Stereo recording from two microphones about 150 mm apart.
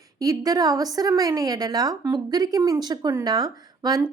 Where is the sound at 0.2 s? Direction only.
25° right (ahead or behind).